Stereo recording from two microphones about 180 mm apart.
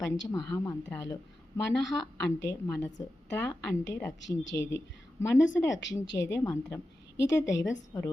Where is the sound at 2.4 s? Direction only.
15° left (ahead or behind).